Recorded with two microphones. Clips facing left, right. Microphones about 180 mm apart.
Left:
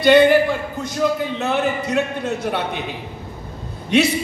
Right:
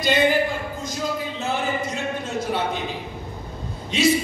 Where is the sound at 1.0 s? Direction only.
65° left (ahead or behind).